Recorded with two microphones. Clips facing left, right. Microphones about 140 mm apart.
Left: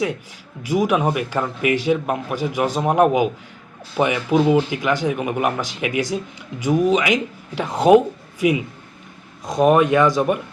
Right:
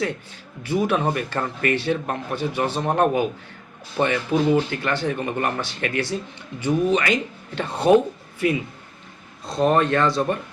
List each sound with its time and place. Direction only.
0.0 s speech: 10° left (ahead or behind)